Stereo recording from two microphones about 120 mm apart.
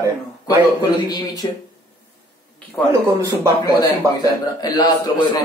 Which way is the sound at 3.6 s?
35° left (ahead or behind).